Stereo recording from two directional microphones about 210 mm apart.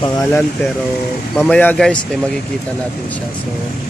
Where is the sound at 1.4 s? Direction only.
5° left (ahead or behind).